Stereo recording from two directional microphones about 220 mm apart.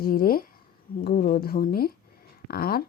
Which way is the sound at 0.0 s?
40° left (ahead or behind).